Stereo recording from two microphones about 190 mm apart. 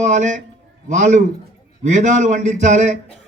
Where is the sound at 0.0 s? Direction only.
40° right (ahead or behind).